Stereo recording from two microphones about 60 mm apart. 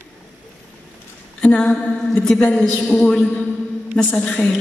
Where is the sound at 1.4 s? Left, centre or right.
Left.